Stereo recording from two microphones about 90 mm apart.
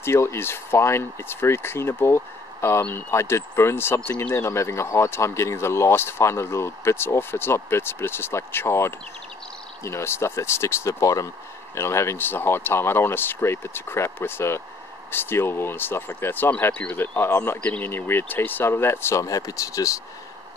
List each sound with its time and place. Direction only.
0.0 s speech: 30° left (ahead or behind)
19.2 s speech: 40° left (ahead or behind)